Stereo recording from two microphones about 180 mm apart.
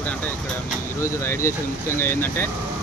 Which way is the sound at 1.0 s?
15° left (ahead or behind).